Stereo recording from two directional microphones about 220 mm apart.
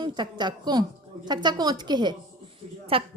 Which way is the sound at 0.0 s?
20° right (ahead or behind).